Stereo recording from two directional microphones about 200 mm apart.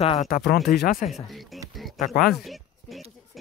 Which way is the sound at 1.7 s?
Centre (ahead or behind).